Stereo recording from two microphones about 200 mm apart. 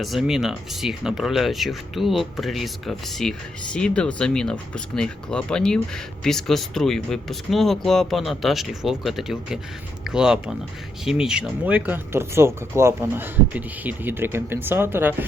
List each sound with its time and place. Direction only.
0.0 s speech: centre (ahead or behind)